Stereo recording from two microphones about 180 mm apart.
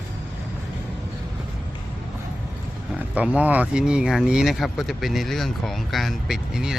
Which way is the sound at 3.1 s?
5° right (ahead or behind).